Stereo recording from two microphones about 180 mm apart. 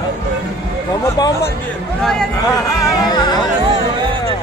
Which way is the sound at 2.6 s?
20° left (ahead or behind).